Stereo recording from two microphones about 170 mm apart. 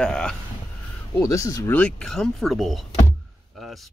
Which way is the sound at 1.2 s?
20° left (ahead or behind).